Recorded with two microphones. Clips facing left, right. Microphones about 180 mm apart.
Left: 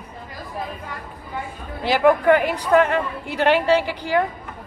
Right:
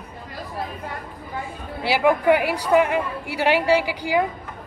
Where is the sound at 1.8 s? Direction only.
10° right (ahead or behind).